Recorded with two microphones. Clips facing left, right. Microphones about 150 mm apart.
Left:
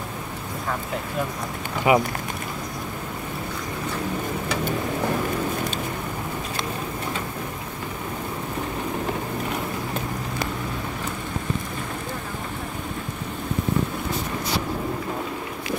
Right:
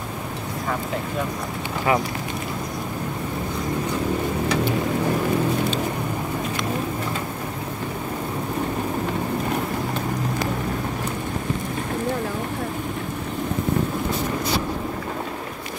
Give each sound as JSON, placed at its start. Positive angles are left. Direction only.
{"t": 1.9, "sound": "speech", "side_deg": 20}